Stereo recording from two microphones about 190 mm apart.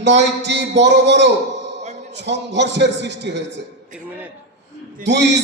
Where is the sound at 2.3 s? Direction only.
65° right (ahead or behind).